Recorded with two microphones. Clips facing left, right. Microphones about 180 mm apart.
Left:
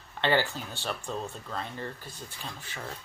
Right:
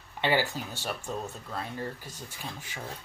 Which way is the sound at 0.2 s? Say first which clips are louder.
Left 1 dB; 10° right (ahead or behind).